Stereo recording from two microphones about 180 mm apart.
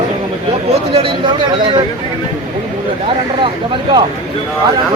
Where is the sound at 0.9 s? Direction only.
30° right (ahead or behind).